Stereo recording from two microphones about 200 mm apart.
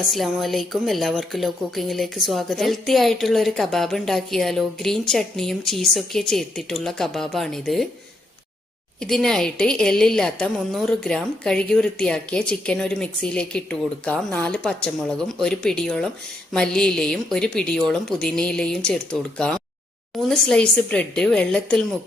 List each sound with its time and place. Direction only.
0.1 s a woman's voice: centre (ahead or behind)
9.0 s a woman's voice: centre (ahead or behind)
20.1 s a woman's voice: centre (ahead or behind)